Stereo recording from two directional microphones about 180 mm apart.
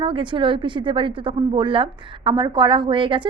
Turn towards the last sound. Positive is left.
turn(degrees=-25)  # may be behind; listen again after turning